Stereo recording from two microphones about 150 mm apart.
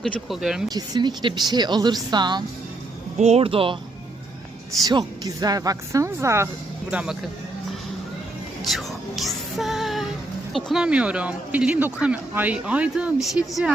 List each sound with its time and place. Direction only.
0.0 s speech: centre (ahead or behind)
0.7 s speech: 30° right (ahead or behind)
3.2 s speech: 45° right (ahead or behind)
4.9 s speech: 25° right (ahead or behind)
6.9 s speech: 5° right (ahead or behind)
8.6 s music: centre (ahead or behind)
10.5 s speech: centre (ahead or behind)